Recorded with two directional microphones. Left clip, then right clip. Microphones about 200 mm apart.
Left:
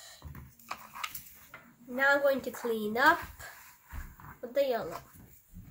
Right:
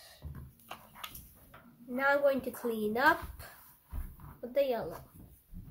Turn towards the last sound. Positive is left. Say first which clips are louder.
# left 1 dB
turn(degrees=0)  # may be behind; listen again after turning